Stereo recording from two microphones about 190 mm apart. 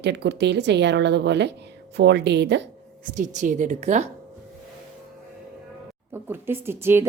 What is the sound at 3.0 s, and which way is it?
Speech, 45° right (ahead or behind).